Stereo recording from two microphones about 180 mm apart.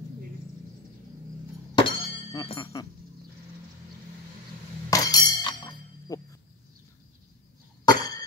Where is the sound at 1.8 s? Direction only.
25° left (ahead or behind).